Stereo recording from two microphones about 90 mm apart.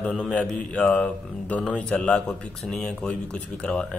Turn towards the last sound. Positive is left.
turn(degrees=10)  # may be behind; listen again after turning